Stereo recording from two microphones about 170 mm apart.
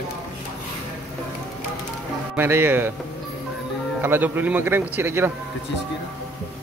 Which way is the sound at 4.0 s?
10° right (ahead or behind).